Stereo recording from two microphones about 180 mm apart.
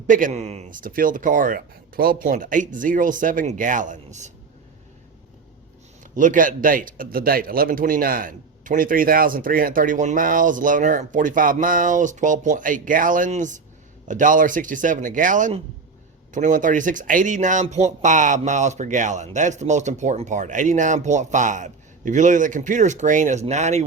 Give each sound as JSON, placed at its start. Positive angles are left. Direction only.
{"t": 0.1, "sound": "speech", "side_deg": -45}
{"t": 6.1, "sound": "speech", "side_deg": -45}